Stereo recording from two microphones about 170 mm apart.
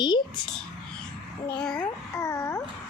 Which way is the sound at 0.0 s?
25° left (ahead or behind).